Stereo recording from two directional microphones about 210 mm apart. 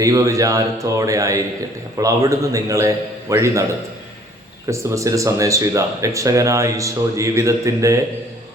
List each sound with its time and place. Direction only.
0.0 s speech: 15° right (ahead or behind)
4.7 s speech: 15° right (ahead or behind)